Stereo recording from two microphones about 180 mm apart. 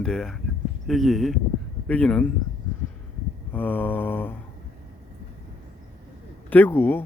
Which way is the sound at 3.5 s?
10° left (ahead or behind).